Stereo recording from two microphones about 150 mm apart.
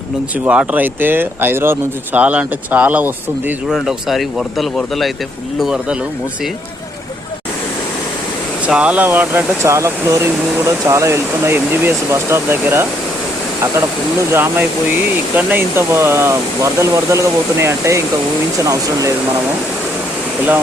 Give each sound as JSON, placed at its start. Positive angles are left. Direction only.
{"t": 0.4, "sound": "speech", "side_deg": -10}
{"t": 8.6, "sound": "speech", "side_deg": -10}
{"t": 14.3, "sound": "speech", "side_deg": -15}